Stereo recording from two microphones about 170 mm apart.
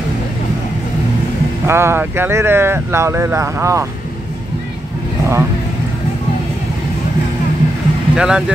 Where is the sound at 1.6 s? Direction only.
15° right (ahead or behind).